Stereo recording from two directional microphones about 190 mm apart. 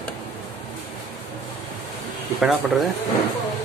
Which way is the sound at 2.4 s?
Centre (ahead or behind).